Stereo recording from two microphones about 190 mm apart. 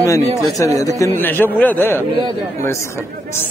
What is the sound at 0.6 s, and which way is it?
A man's voice, 15° left (ahead or behind).